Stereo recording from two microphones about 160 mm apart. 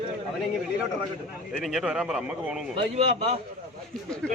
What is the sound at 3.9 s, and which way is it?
Speech, 5° left (ahead or behind).